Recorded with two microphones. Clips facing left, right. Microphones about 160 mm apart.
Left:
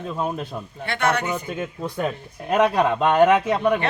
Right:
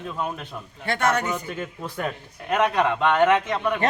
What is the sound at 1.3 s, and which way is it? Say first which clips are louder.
Speech: left 3 dB; 15° left (ahead or behind).